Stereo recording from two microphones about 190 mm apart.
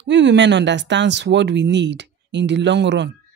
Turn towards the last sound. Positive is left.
turn(degrees=-65)  # may be behind; listen again after turning